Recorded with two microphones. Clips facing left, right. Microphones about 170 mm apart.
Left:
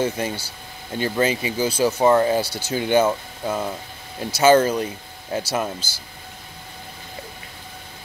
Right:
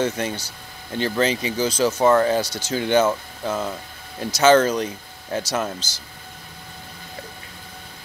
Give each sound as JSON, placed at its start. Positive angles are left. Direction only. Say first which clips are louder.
{"t": 0.0, "sound": "speech", "louder": "even", "side_deg": 10}